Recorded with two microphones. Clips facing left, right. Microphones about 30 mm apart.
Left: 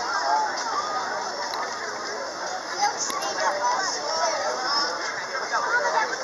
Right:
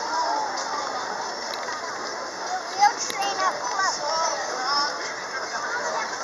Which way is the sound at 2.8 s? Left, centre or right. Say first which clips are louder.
Right 5 dB; centre.